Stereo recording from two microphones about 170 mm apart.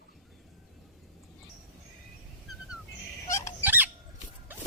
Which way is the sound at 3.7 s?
10° right (ahead or behind).